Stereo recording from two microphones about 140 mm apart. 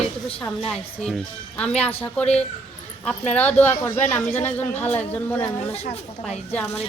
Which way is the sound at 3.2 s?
50° left (ahead or behind).